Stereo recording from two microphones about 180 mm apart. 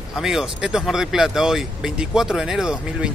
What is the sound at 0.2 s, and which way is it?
Speech, 5° right (ahead or behind).